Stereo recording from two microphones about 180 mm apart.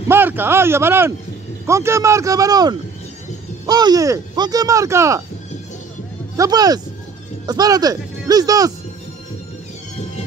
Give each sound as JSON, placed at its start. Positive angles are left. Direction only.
{"t": 0.1, "sound": "speech", "side_deg": -10}
{"t": 6.3, "sound": "speech", "side_deg": -20}